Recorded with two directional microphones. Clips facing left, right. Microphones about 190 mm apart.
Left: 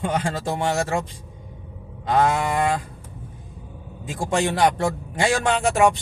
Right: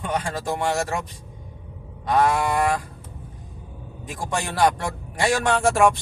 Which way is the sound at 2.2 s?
25° left (ahead or behind).